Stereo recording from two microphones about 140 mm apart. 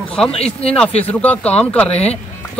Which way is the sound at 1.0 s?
10° left (ahead or behind).